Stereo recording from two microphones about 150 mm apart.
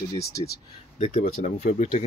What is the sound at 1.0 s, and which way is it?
Speech, 45° left (ahead or behind).